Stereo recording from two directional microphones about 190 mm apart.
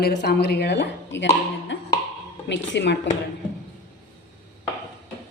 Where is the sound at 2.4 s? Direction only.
70° left (ahead or behind).